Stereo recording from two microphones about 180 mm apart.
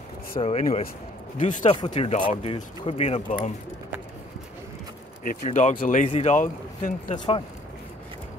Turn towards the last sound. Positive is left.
turn(degrees=30)  # may be behind; listen again after turning